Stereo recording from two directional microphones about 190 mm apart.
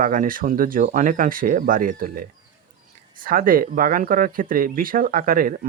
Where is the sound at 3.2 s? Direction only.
50° right (ahead or behind).